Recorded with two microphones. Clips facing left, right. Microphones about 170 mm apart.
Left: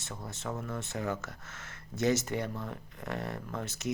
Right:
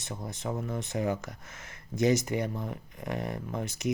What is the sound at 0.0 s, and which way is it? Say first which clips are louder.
Speech: right 4 dB; 20° right (ahead or behind).